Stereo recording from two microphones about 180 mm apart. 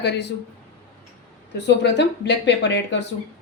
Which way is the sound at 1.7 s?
70° left (ahead or behind).